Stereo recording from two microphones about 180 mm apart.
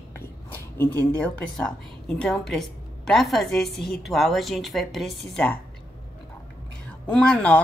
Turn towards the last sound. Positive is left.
turn(degrees=5)  # may be behind; listen again after turning